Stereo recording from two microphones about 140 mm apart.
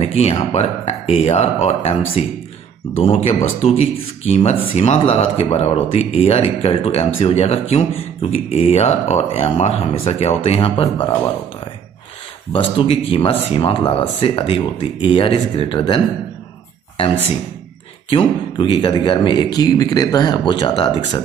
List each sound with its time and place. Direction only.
0.0 s speech: 50° left (ahead or behind)
12.5 s speech: 40° left (ahead or behind)
18.1 s speech: 35° left (ahead or behind)